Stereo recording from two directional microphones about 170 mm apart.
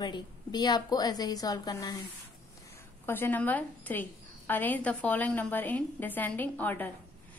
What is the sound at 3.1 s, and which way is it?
A woman's voice, 10° left (ahead or behind).